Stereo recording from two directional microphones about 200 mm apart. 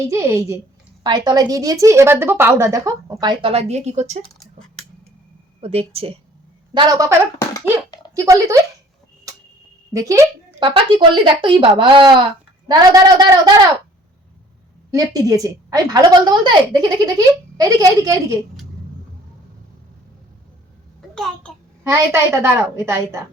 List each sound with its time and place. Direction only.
0.0 s a woman's voice: 15° right (ahead or behind); by 4.2 s 35° right (ahead or behind)
5.5 s a woman's voice: 30° right (ahead or behind)
6.7 s a woman's voice: 15° right (ahead or behind)
7.3 s a sound: 20° left (ahead or behind)
8.1 s a woman's voice: 15° right (ahead or behind)
9.9 s a woman's voice: 15° right (ahead or behind)
14.8 s a woman's voice: 20° right (ahead or behind)
21.8 s a woman's voice: 15° right (ahead or behind)